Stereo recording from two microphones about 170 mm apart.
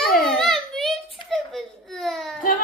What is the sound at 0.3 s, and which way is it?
Whimper, centre (ahead or behind).